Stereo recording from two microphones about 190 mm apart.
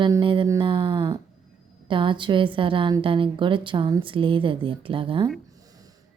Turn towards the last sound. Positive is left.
turn(degrees=-25)  # may be behind; listen again after turning